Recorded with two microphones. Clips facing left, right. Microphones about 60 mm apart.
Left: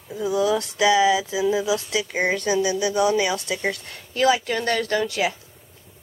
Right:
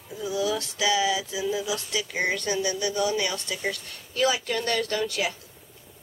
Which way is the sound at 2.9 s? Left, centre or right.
Left.